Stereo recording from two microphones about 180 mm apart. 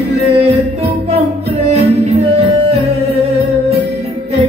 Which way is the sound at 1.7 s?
35° right (ahead or behind).